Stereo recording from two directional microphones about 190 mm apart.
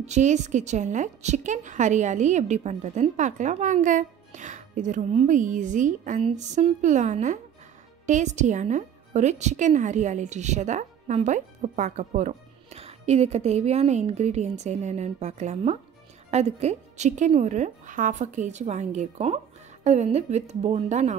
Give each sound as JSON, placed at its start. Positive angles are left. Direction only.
{"t": 0.0, "sound": "a woman's voice", "side_deg": -40}